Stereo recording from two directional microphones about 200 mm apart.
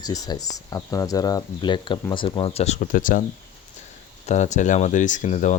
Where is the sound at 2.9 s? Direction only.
45° left (ahead or behind).